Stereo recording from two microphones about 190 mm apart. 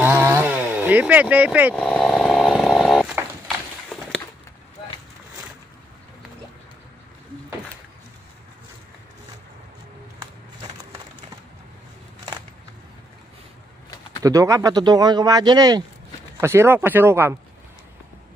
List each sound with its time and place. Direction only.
0.0 s chainsaw: 10° right (ahead or behind)
1.8 s chainsaw: 5° left (ahead or behind)
14.2 s speech: 15° right (ahead or behind)